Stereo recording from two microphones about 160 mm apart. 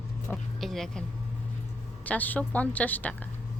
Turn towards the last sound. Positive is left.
turn(degrees=10)  # may be behind; listen again after turning